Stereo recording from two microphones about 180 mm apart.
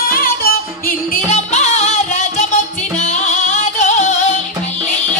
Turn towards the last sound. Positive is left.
turn(degrees=45)  # may be behind; listen again after turning